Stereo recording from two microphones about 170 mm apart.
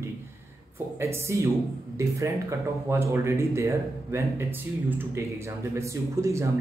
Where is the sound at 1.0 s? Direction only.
15° right (ahead or behind).